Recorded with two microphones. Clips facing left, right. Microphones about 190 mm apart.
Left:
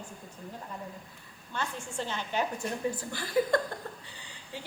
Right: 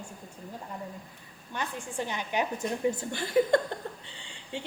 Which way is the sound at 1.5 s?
15° right (ahead or behind).